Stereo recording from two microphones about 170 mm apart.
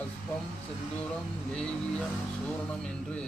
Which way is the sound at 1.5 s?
5° left (ahead or behind).